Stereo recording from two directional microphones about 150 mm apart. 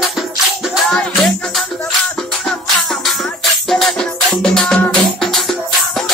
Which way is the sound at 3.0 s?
Centre (ahead or behind).